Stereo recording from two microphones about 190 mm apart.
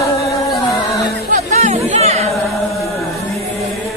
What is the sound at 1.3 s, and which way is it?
Chatter, 35° right (ahead or behind).